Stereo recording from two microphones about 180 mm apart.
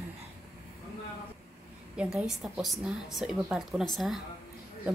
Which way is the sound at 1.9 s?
5° right (ahead or behind).